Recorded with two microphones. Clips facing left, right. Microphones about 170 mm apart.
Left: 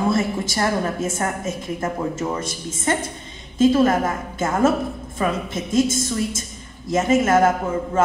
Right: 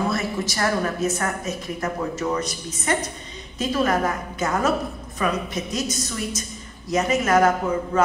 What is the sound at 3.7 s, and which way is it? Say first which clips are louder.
A woman's voice: left 4 dB; 25° left (ahead or behind).